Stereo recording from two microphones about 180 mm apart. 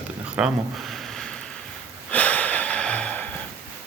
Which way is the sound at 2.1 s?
10° left (ahead or behind).